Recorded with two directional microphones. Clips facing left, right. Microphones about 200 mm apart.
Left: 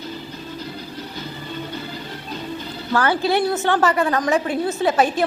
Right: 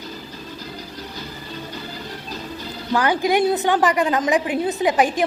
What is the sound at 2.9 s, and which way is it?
A woman's voice, 15° right (ahead or behind).